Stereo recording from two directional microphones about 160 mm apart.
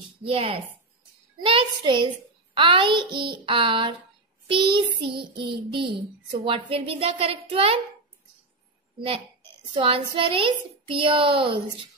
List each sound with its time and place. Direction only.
0.2 s a child's voice: 35° right (ahead or behind)
9.0 s a child's voice: 35° right (ahead or behind)